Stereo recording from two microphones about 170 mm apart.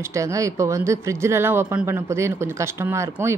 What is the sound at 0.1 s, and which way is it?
Speech, 20° right (ahead or behind).